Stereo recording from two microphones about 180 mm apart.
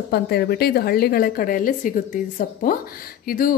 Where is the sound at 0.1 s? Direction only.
60° left (ahead or behind).